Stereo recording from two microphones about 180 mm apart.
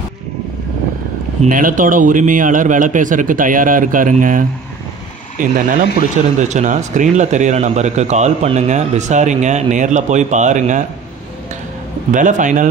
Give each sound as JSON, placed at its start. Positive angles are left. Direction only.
{"t": 1.4, "sound": "a man's voice", "side_deg": -50}
{"t": 12.1, "sound": "speech", "side_deg": -45}